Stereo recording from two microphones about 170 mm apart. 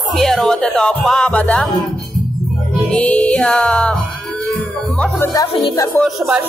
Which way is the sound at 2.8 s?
10° left (ahead or behind).